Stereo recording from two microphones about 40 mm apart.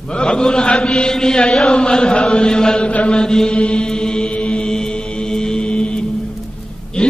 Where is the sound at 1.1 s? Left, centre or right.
Centre.